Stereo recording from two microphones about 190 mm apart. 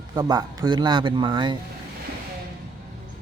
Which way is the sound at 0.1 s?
20° right (ahead or behind).